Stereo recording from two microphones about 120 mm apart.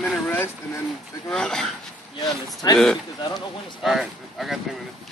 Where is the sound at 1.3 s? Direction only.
5° left (ahead or behind).